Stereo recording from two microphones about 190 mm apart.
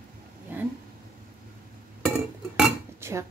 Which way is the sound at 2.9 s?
15° right (ahead or behind).